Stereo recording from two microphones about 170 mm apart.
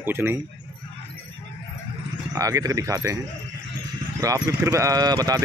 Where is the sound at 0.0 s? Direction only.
15° right (ahead or behind).